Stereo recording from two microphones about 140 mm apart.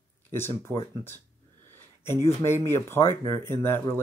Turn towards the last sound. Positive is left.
turn(degrees=15)  # may be behind; listen again after turning